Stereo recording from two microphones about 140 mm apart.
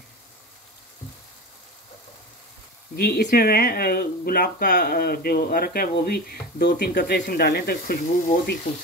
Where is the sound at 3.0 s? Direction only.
90° left.